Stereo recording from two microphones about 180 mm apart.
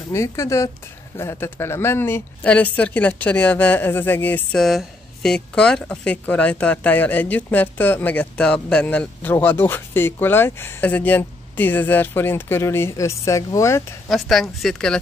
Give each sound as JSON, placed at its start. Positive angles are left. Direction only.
{"t": 0.1, "sound": "speech", "side_deg": 15}
{"t": 14.0, "sound": "speech", "side_deg": 0}